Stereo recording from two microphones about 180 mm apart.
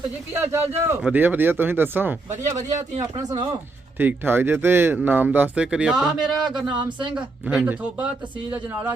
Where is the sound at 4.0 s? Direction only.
10° right (ahead or behind).